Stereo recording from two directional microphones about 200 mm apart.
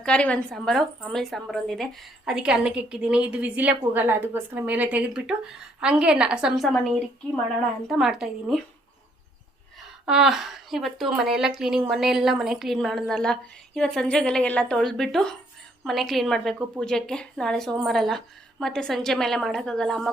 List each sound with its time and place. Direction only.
0.0 s a woman's voice: 5° left (ahead or behind)
10.1 s a woman's voice: centre (ahead or behind)